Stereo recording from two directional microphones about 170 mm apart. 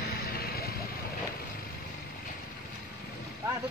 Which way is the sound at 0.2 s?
60° left (ahead or behind).